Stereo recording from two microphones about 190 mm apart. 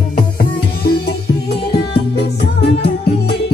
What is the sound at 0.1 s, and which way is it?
Music, 50° left (ahead or behind).